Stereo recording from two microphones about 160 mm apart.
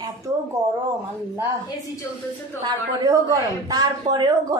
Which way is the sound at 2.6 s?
20° right (ahead or behind).